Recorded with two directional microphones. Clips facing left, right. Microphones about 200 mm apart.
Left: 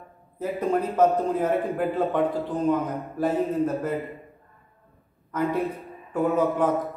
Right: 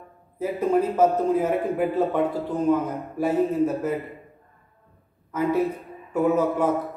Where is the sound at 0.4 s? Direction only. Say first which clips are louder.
Right 3 dB; 10° right (ahead or behind).